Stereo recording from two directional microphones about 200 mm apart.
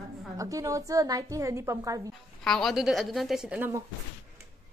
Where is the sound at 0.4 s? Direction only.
15° right (ahead or behind).